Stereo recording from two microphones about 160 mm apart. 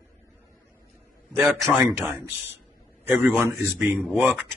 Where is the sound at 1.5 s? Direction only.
Centre (ahead or behind).